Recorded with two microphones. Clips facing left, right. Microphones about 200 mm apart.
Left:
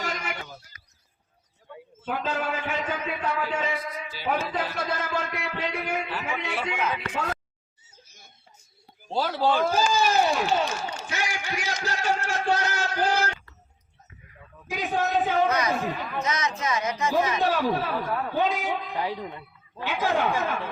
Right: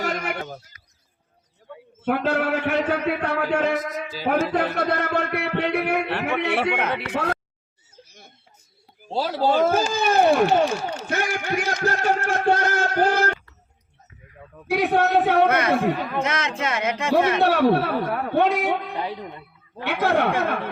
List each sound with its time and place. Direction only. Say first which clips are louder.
0.0 s goat: right 6 dB; 60° right (ahead or behind)
2.0 s a man's voice: right 7 dB; 70° right (ahead or behind)
9.0 s speech: right 2 dB; 30° right (ahead or behind)
9.9 s a man's voice: right 4 dB; 55° right (ahead or behind)
11.0 s a sound: right 6 dB; 55° right (ahead or behind)
14.7 s a man's voice: right 7 dB; 70° right (ahead or behind)